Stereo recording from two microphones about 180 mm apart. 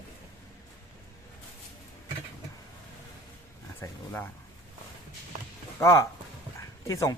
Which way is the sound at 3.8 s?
10° left (ahead or behind).